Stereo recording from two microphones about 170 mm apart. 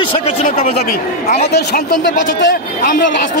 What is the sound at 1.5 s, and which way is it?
Speech, 75° left (ahead or behind).